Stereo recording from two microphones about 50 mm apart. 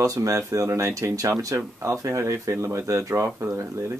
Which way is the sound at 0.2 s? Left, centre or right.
Right.